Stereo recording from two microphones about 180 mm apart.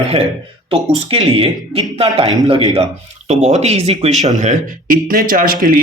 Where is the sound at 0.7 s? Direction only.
30° right (ahead or behind).